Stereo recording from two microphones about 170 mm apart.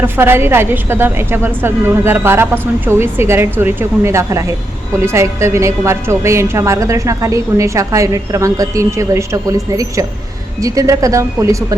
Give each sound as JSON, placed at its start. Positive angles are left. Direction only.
{"t": 0.0, "sound": "a woman's voice", "side_deg": -15}